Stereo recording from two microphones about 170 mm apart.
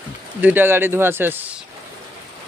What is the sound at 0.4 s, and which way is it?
Speech, 10° right (ahead or behind).